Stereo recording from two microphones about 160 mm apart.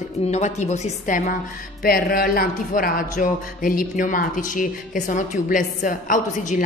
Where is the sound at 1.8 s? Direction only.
65° left (ahead or behind).